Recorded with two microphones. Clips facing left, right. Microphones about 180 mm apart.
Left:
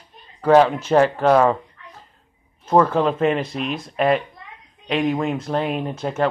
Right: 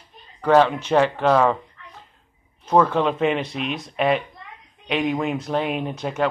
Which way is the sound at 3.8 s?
Centre (ahead or behind).